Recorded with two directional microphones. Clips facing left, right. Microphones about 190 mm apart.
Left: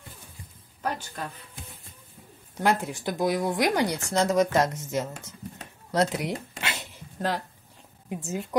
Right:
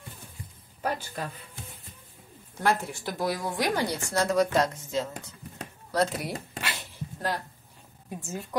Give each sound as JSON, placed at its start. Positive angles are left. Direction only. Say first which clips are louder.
{"t": 2.6, "sound": "speech", "louder": "left 2 dB", "side_deg": 15}
{"t": 5.9, "sound": "a sound", "louder": "left 2 dB", "side_deg": 20}
{"t": 8.1, "sound": "speech", "louder": "left 4 dB", "side_deg": 20}